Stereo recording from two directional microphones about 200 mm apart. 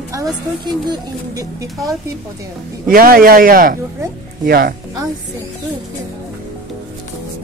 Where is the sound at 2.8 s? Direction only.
45° right (ahead or behind).